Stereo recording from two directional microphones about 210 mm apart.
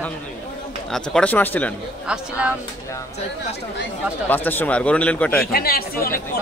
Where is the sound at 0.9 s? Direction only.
5° left (ahead or behind).